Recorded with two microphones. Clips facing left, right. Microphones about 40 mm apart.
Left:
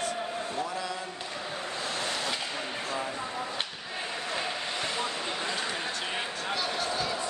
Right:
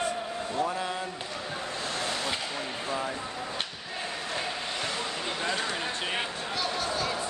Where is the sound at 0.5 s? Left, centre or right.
Right.